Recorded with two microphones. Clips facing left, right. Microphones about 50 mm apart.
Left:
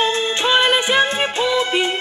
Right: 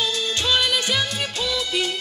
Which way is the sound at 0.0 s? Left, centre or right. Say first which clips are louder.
Left 6 dB; left.